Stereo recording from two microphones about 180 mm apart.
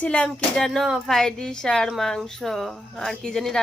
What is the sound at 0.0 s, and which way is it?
Speech, 5° left (ahead or behind).